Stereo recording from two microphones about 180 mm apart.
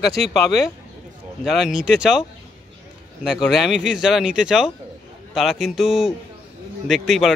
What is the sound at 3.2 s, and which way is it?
Speech, centre (ahead or behind).